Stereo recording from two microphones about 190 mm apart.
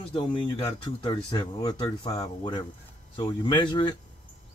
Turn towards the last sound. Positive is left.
turn(degrees=25)  # may be behind; listen again after turning